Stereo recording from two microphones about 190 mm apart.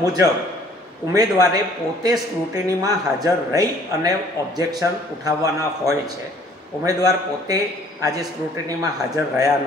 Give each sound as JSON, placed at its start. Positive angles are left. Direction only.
{"t": 0.0, "sound": "a man's voice", "side_deg": -20}